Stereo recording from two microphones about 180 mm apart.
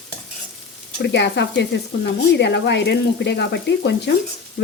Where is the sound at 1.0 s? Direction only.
75° left (ahead or behind).